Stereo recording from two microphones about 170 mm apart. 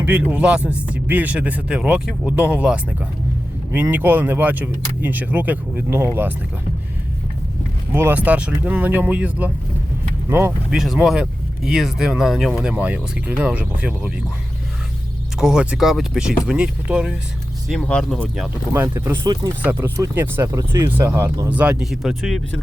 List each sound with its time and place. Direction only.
0.0 s speech: 10° right (ahead or behind)
7.9 s speech: 10° right (ahead or behind)
10.8 s speech: centre (ahead or behind)
15.4 s speech: 5° right (ahead or behind)
17.7 s speech: 5° left (ahead or behind)
18.7 s speech: 15° right (ahead or behind)
21.5 s speech: 5° right (ahead or behind)